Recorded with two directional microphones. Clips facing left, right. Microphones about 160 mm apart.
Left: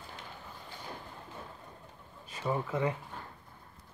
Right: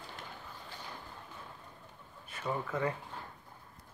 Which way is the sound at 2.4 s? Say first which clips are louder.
Left 3 dB; 15° left (ahead or behind).